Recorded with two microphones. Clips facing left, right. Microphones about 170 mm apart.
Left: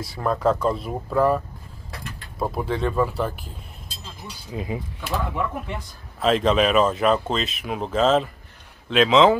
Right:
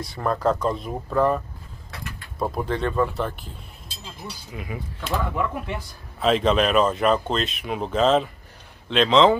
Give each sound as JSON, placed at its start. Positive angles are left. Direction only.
{"t": 0.0, "sound": "speech", "side_deg": 0}
{"t": 4.5, "sound": "speech", "side_deg": 25}
{"t": 5.0, "sound": "speech", "side_deg": 5}